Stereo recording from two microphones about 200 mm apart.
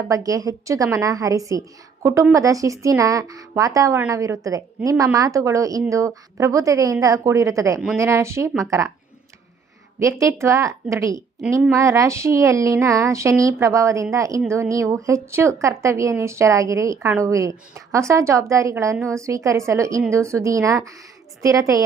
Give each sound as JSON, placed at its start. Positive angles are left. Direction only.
{"t": 0.1, "sound": "a woman's voice", "side_deg": -15}
{"t": 10.0, "sound": "a woman's voice", "side_deg": -15}